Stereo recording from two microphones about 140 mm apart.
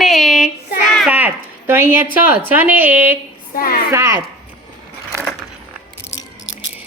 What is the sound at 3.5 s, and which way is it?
Speech, 90° left.